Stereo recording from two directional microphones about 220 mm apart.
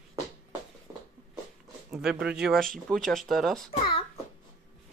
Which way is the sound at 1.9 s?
5° right (ahead or behind).